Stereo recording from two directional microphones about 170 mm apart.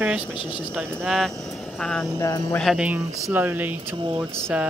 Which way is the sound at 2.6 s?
5° right (ahead or behind).